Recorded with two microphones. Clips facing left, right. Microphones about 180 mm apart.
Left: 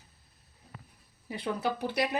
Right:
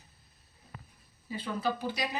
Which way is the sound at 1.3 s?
70° left (ahead or behind).